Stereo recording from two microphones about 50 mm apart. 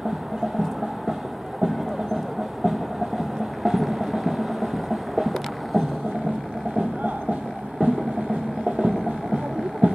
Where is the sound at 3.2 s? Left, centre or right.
Centre.